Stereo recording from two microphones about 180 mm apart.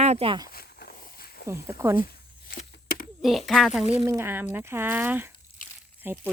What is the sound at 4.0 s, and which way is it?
Speech, 15° right (ahead or behind).